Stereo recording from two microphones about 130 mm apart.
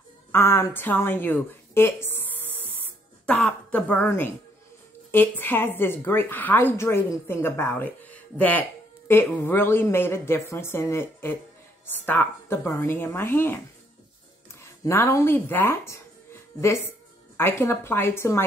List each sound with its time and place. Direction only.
0.3 s a woman's voice: 20° left (ahead or behind)
2.8 s throat clearing: 10° left (ahead or behind)
5.1 s a woman's voice: 15° left (ahead or behind)
14.6 s speech: 20° left (ahead or behind)
17.4 s a woman's voice: 20° left (ahead or behind)